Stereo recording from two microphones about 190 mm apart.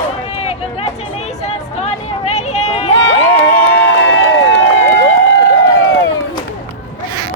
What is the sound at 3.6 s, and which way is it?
Crowd, 90° left.